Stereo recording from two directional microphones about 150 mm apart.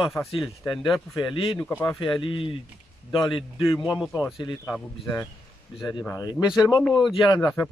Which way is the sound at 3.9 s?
5° right (ahead or behind).